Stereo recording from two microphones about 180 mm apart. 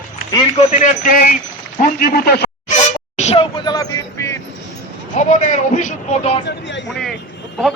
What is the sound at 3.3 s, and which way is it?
Vehicle, 25° left (ahead or behind).